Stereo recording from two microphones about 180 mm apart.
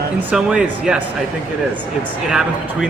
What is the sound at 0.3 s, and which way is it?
Speech, 5° right (ahead or behind).